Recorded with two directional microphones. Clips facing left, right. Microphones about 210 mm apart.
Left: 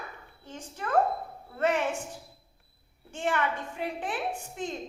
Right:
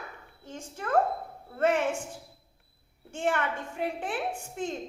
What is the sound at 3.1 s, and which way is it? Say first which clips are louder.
A woman's voice: even; 50° right (ahead or behind).